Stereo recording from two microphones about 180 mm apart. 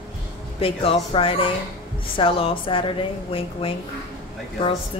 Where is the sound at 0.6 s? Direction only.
30° left (ahead or behind).